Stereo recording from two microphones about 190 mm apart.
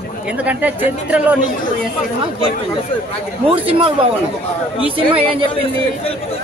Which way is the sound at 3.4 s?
30° right (ahead or behind).